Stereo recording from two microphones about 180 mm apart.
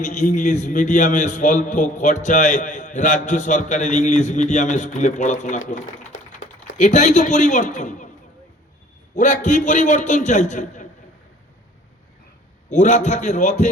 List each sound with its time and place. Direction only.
0.0 s a man's voice: 40° left (ahead or behind)
9.1 s a man's voice: 45° left (ahead or behind)
12.7 s a man's voice: 40° left (ahead or behind)